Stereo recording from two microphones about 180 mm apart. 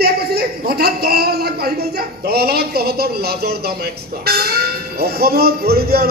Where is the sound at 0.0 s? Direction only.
60° right (ahead or behind).